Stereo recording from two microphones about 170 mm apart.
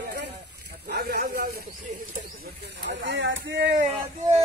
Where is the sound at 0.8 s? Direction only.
65° right (ahead or behind).